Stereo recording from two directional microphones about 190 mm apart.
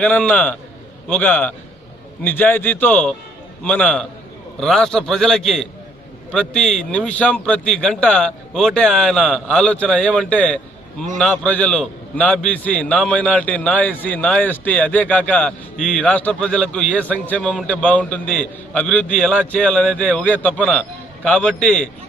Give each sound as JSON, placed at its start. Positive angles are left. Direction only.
{"t": 0.0, "sound": "a man's voice", "side_deg": 5}